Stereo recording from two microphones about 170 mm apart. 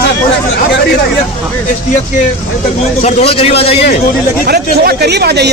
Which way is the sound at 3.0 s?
40° left (ahead or behind).